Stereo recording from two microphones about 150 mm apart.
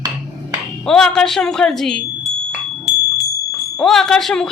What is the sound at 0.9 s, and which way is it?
Speech, 5° left (ahead or behind).